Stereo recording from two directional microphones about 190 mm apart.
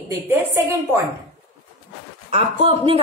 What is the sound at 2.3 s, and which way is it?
Speech, 30° right (ahead or behind).